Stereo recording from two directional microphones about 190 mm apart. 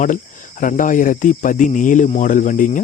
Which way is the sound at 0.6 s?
45° left (ahead or behind).